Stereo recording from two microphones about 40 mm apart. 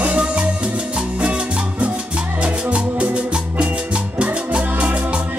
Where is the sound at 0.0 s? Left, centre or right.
Right.